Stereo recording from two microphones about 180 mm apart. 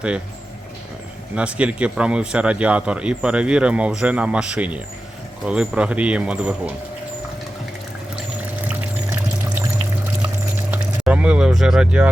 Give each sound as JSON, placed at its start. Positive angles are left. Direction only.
{"t": 1.4, "sound": "speech", "side_deg": -5}
{"t": 10.7, "sound": "vehicle", "side_deg": -5}